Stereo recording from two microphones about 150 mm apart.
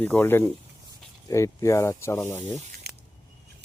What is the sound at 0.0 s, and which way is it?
Speech, 15° left (ahead or behind).